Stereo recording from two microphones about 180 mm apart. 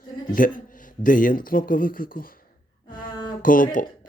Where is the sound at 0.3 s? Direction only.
50° left (ahead or behind).